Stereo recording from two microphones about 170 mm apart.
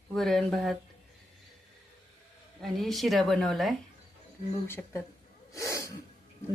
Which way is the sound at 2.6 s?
Centre (ahead or behind).